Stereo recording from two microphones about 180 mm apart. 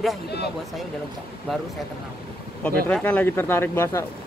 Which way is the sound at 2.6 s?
10° left (ahead or behind).